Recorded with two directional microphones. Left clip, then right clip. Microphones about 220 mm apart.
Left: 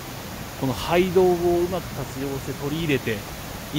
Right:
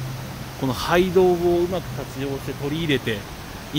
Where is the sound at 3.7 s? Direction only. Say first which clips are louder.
Right 3 dB; 15° right (ahead or behind).